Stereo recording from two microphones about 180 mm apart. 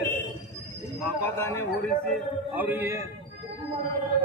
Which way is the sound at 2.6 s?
10° right (ahead or behind).